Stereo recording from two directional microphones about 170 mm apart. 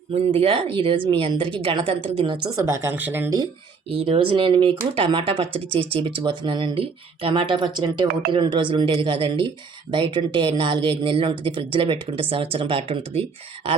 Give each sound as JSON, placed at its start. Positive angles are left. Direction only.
{"t": 0.1, "sound": "speech", "side_deg": -35}
{"t": 3.9, "sound": "speech", "side_deg": -35}